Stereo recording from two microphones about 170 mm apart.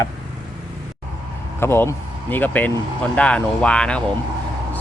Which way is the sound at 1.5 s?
15° left (ahead or behind).